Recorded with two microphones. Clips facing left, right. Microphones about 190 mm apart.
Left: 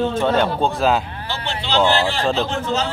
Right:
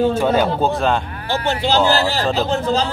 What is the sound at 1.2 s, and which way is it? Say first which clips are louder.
A man's voice: right 7 dB; 45° right (ahead or behind).